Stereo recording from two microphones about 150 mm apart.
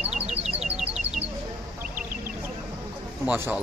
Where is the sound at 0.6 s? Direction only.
5° right (ahead or behind).